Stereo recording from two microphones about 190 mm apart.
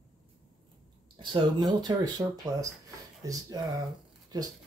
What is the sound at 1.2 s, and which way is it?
Speech, 25° right (ahead or behind).